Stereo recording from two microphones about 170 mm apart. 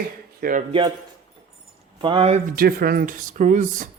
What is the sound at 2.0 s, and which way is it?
Speech, 35° right (ahead or behind).